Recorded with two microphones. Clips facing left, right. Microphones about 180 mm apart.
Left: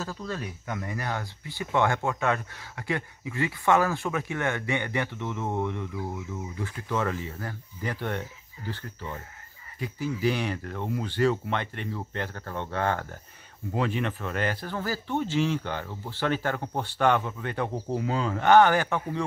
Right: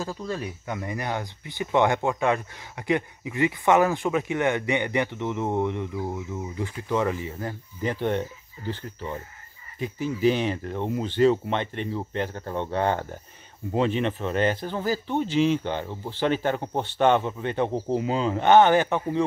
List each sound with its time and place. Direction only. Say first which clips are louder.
0.0 s speech: right 3 dB; 10° right (ahead or behind)